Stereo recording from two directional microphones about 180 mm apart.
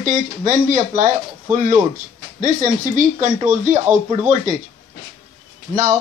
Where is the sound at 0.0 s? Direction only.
45° right (ahead or behind).